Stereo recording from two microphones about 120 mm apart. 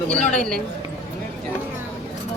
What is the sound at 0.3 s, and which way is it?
Speech, 5° left (ahead or behind).